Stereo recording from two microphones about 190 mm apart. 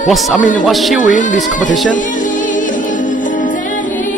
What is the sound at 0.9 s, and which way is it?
Speech, 45° left (ahead or behind).